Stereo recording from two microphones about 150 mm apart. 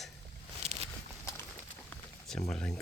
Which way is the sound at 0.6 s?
45° right (ahead or behind).